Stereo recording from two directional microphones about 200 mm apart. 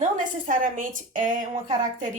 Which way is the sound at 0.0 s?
40° right (ahead or behind).